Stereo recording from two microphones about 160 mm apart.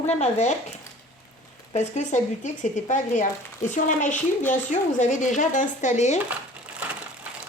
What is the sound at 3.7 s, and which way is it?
Speech, 55° left (ahead or behind).